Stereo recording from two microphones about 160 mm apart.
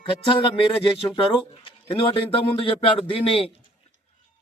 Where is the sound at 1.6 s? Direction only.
35° left (ahead or behind).